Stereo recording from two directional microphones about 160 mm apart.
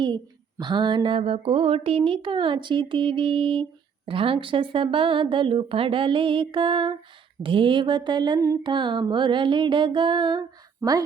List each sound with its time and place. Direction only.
0.6 s speech: 30° right (ahead or behind)
7.4 s mantra: 30° right (ahead or behind)
10.8 s a woman's voice: 20° right (ahead or behind)